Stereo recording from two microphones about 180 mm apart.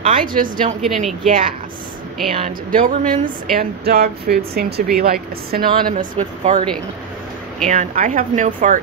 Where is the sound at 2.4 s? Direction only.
50° right (ahead or behind).